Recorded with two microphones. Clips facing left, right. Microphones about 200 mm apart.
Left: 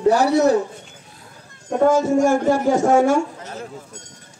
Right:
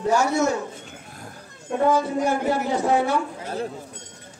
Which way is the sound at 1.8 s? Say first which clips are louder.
Left 6 dB; 45° left (ahead or behind).